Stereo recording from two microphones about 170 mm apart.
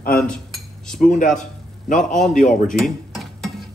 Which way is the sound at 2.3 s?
45° left (ahead or behind).